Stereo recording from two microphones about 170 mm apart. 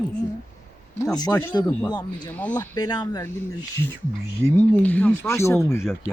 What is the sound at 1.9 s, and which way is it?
Speech, 25° left (ahead or behind).